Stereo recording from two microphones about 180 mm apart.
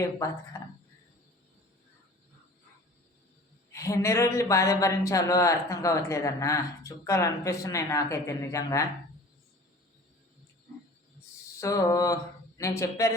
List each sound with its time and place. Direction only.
0.2 s speech: 15° left (ahead or behind)
3.7 s speech: 15° left (ahead or behind)
11.6 s speech: 15° left (ahead or behind)